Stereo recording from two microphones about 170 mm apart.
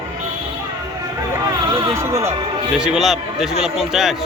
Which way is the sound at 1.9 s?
15° right (ahead or behind).